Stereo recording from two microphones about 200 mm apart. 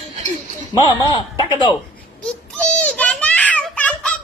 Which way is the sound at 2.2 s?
5° left (ahead or behind).